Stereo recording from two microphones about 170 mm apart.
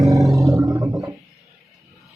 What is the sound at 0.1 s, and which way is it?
Roar, centre (ahead or behind).